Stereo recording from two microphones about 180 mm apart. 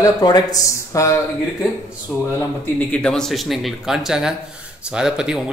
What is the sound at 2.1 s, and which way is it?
A man's voice, centre (ahead or behind).